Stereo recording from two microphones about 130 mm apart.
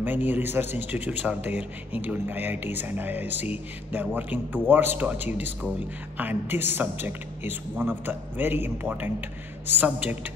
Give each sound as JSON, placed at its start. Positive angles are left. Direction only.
{"t": 0.0, "sound": "speech", "side_deg": -15}